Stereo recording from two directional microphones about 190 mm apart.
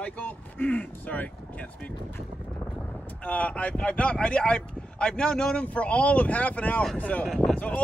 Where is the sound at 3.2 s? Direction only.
5° left (ahead or behind).